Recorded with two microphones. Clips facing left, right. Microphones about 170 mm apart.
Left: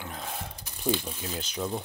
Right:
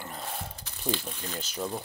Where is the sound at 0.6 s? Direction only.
10° left (ahead or behind); by 1.8 s 5° right (ahead or behind).